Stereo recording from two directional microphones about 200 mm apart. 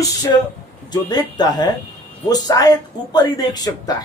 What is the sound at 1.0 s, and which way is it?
A man's voice, 20° left (ahead or behind).